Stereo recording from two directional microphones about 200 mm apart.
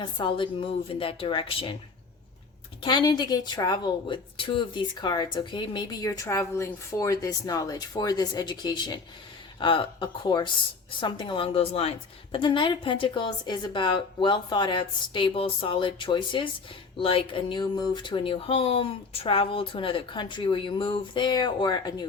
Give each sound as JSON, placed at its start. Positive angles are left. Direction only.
{"t": 0.0, "sound": "speech", "side_deg": 25}
{"t": 2.8, "sound": "speech", "side_deg": 20}